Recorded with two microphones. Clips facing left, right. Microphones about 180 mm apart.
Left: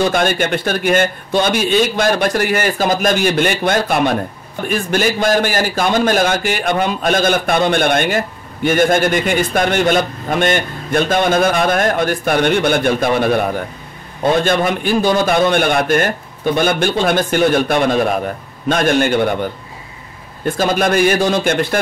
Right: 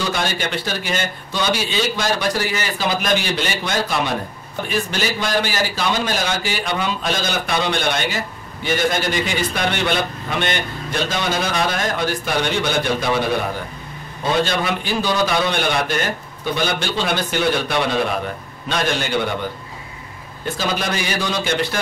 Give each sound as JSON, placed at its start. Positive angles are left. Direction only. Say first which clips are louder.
{"t": 0.0, "sound": "a man's voice", "louder": "left 8 dB", "side_deg": 55}